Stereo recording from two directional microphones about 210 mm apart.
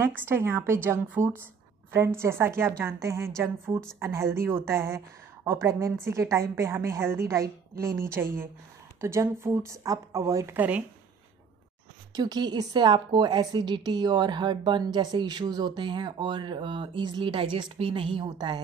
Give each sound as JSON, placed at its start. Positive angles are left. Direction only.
{"t": 0.0, "sound": "a woman's voice", "side_deg": -10}
{"t": 12.1, "sound": "a woman's voice", "side_deg": -20}